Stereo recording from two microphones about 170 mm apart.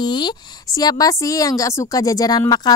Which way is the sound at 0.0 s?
25° left (ahead or behind).